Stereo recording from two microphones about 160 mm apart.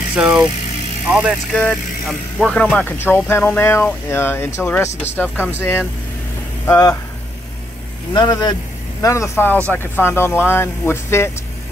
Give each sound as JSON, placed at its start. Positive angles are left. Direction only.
{"t": 0.1, "sound": "speech", "side_deg": -5}
{"t": 1.5, "sound": "speech", "side_deg": 10}
{"t": 8.1, "sound": "speech", "side_deg": 25}